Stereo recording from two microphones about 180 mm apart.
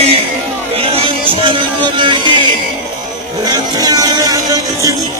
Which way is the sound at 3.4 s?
20° right (ahead or behind).